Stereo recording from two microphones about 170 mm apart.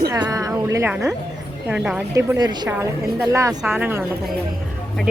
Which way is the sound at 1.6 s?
5° right (ahead or behind).